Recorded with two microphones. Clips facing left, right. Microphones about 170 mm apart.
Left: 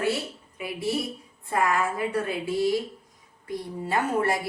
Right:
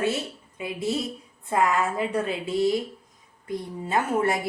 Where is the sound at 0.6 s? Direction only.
25° right (ahead or behind).